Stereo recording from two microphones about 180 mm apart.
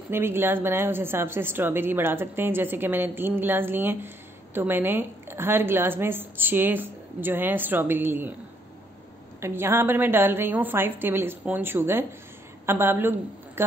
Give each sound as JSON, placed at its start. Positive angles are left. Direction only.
{"t": 0.1, "sound": "a woman's voice", "side_deg": -15}
{"t": 9.4, "sound": "a woman's voice", "side_deg": -15}